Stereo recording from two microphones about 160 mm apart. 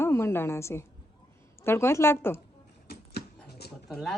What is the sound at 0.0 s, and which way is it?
A woman's voice, 15° left (ahead or behind).